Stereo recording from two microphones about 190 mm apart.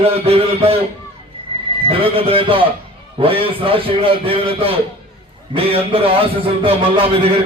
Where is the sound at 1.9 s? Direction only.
30° right (ahead or behind).